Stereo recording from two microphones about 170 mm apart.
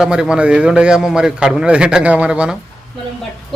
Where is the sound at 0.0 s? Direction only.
5° right (ahead or behind).